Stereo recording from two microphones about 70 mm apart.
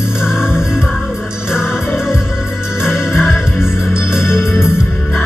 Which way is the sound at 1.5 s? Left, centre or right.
Centre.